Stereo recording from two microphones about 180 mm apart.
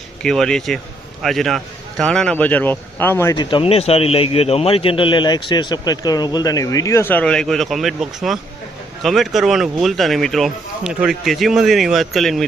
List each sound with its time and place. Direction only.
0.2 s speech: 5° left (ahead or behind)
3.5 s a man's voice: 35° left (ahead or behind); by 12.5 s centre (ahead or behind)